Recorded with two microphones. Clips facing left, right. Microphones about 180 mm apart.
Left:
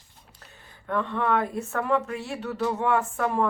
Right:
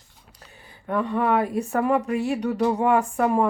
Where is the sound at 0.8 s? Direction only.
15° right (ahead or behind).